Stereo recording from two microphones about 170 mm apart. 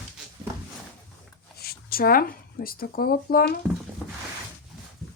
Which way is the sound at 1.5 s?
65° left (ahead or behind).